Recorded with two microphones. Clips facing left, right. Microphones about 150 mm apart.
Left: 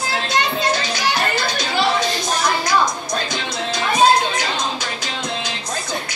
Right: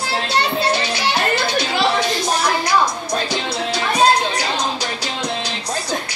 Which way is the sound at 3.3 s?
35° right (ahead or behind).